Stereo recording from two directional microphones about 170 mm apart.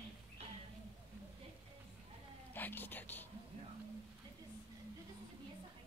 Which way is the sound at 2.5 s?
10° left (ahead or behind).